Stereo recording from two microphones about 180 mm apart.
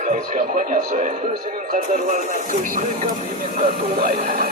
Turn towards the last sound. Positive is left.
turn(degrees=-55)  # may be behind; listen again after turning